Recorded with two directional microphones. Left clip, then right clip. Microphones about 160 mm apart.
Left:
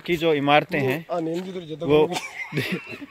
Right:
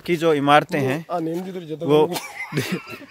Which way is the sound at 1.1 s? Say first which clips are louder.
Right 1 dB; 90° right.